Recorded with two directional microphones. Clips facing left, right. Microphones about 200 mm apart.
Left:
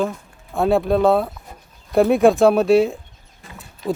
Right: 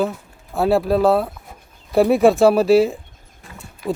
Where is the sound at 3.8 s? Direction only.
20° left (ahead or behind).